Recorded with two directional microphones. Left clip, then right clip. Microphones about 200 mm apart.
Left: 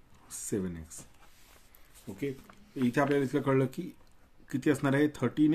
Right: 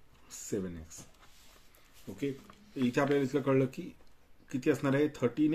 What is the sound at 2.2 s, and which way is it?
Speech, 25° left (ahead or behind).